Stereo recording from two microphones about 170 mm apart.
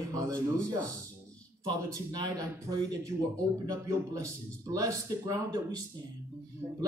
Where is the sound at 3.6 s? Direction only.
20° right (ahead or behind).